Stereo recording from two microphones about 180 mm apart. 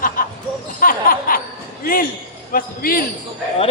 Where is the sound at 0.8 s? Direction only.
50° left (ahead or behind).